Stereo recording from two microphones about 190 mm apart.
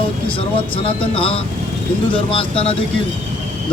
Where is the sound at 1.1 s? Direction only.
30° left (ahead or behind).